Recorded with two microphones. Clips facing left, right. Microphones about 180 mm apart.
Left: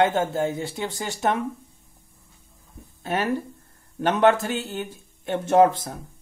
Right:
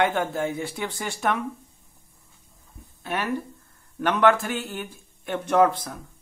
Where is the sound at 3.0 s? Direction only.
30° left (ahead or behind).